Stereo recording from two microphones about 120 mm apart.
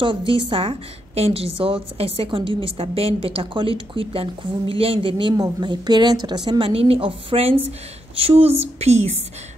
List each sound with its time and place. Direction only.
0.0 s a woman's voice: 45° right (ahead or behind); by 9.1 s 60° right (ahead or behind)